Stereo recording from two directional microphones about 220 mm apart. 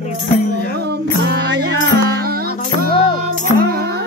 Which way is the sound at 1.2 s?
45° right (ahead or behind).